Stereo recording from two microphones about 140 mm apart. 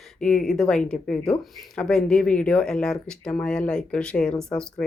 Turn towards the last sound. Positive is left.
turn(degrees=5)  # may be behind; listen again after turning